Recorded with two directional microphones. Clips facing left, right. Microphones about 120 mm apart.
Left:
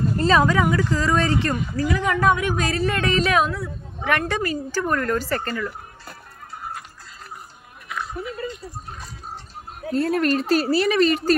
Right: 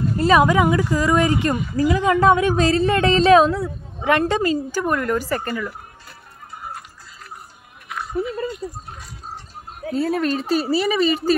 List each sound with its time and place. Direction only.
0.2 s speech: 15° right (ahead or behind)
9.8 s speech: 5° right (ahead or behind)